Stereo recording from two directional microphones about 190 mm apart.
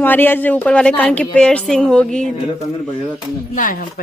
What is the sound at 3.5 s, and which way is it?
Speech, 50° left (ahead or behind).